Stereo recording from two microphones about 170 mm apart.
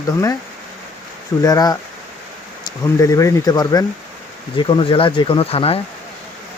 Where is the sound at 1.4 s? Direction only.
20° left (ahead or behind).